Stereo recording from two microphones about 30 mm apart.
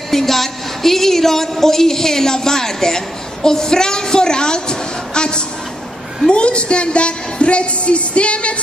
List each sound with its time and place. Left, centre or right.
0.1 s a woman's voice: centre; by 8.5 s left